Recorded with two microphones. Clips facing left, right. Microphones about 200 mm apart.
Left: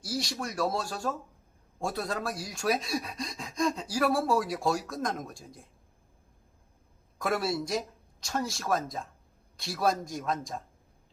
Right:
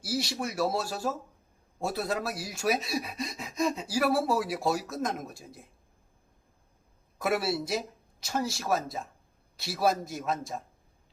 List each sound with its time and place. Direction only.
0.0 s speech: 5° right (ahead or behind)
7.2 s speech: 5° right (ahead or behind)